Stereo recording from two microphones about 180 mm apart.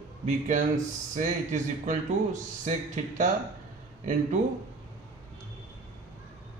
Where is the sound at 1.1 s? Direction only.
40° right (ahead or behind).